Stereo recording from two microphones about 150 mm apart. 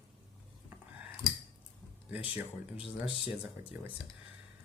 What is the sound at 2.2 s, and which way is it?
Speech, 10° right (ahead or behind).